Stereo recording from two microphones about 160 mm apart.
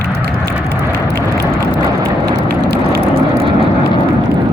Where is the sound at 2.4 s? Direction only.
75° right (ahead or behind).